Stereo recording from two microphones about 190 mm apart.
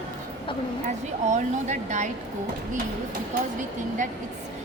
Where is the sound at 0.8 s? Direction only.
40° right (ahead or behind).